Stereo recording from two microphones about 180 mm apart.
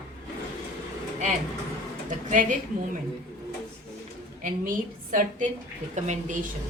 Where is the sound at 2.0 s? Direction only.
45° right (ahead or behind).